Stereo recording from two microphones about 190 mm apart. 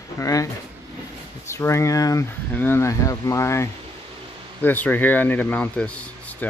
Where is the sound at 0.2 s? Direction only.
15° left (ahead or behind).